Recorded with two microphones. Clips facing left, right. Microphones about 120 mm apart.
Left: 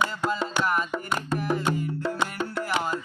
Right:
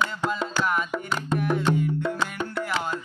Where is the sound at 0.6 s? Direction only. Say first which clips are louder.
Even; centre (ahead or behind).